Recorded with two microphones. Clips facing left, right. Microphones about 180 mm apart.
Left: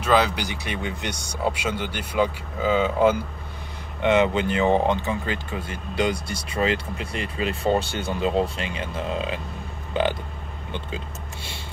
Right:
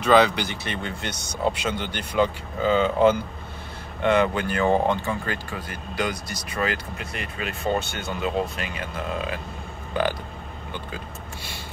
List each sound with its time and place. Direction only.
0.0 s speech: 5° left (ahead or behind)
4.0 s speech: 20° left (ahead or behind)